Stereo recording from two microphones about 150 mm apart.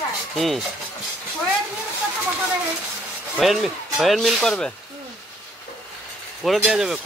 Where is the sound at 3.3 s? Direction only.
Centre (ahead or behind).